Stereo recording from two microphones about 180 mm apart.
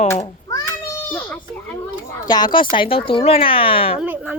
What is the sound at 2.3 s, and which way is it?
Speech, 25° left (ahead or behind).